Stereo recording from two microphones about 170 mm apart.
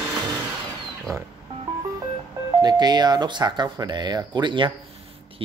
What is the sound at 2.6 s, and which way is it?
Speech, 25° right (ahead or behind).